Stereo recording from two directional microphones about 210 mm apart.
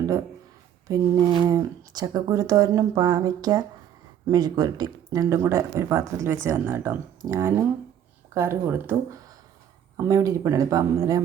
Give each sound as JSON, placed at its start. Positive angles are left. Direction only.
{"t": 0.9, "sound": "speech", "side_deg": -15}